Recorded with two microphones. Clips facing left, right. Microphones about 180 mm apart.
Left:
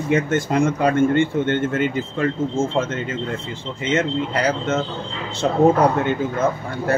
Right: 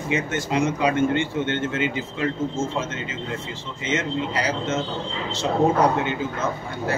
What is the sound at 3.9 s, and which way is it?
A man's voice, 55° left (ahead or behind).